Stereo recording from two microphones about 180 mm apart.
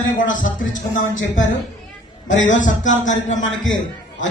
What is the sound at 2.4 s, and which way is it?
Speech, 45° left (ahead or behind).